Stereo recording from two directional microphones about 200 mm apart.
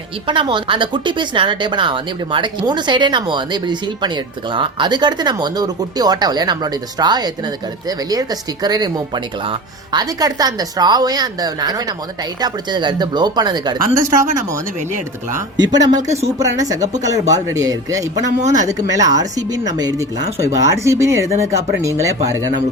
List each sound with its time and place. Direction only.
0.3 s speech: 25° right (ahead or behind)
15.4 s speech: 20° right (ahead or behind)
16.0 s speech: 35° right (ahead or behind)
16.4 s speech: 15° right (ahead or behind)